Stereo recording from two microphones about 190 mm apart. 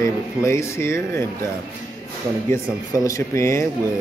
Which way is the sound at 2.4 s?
15° left (ahead or behind).